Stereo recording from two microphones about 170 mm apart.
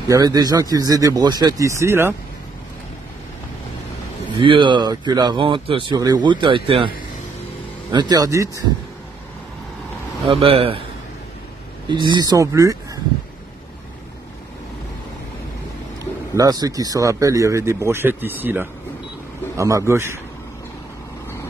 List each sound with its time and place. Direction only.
0.1 s speech: 20° right (ahead or behind)
4.4 s speech: 30° right (ahead or behind)
7.9 s speech: 25° right (ahead or behind)
10.2 s a man's voice: 35° right (ahead or behind)
11.9 s speech: 25° right (ahead or behind)
16.3 s speech: 20° right (ahead or behind)